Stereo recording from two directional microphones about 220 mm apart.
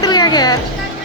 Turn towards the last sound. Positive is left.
turn(degrees=15)  # may be behind; listen again after turning